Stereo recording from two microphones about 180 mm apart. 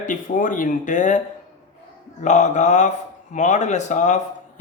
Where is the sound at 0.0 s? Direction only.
45° left (ahead or behind).